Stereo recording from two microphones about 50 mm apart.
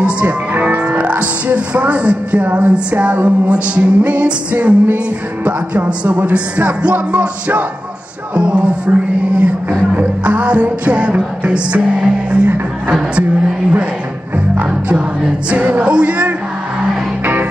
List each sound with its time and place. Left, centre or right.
0.0 s speech: right
0.7 s music: right
8.9 s a sound: right
9.4 s music: right
15.5 s music: right
17.2 s music: right